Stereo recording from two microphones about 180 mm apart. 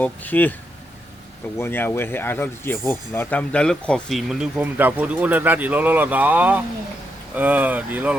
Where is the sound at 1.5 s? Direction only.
15° left (ahead or behind).